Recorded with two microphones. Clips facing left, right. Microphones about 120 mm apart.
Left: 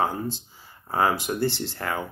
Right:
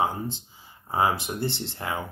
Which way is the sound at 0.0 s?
15° right (ahead or behind).